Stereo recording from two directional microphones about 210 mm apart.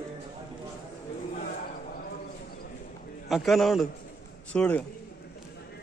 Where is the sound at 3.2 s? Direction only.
Centre (ahead or behind).